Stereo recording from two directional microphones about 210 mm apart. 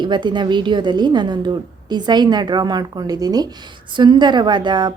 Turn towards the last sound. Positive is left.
turn(degrees=-20)  # may be behind; listen again after turning